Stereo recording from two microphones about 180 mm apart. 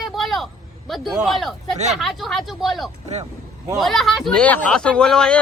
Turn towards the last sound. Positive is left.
turn(degrees=5)  # may be behind; listen again after turning